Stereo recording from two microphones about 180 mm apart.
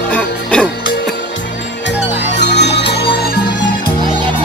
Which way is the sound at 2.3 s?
70° left (ahead or behind).